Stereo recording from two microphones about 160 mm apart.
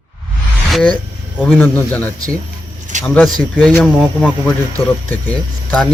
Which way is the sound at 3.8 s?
Centre (ahead or behind).